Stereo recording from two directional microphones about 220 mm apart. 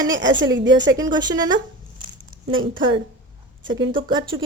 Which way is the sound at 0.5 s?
55° right (ahead or behind).